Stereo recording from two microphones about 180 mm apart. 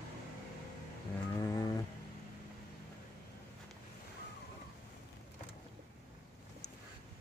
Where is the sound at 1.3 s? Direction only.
20° left (ahead or behind).